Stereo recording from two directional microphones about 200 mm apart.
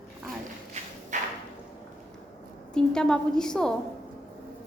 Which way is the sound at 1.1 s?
35° right (ahead or behind).